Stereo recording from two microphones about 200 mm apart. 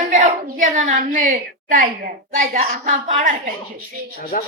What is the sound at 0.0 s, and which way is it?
A woman's voice, 40° right (ahead or behind).